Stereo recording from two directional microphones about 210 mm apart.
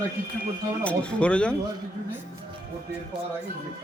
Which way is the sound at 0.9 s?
5° left (ahead or behind).